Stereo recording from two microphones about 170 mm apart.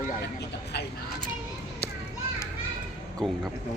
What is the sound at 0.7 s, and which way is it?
Speech, 75° left (ahead or behind).